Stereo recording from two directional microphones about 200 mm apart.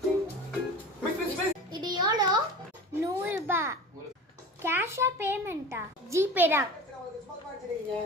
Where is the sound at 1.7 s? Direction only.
20° right (ahead or behind).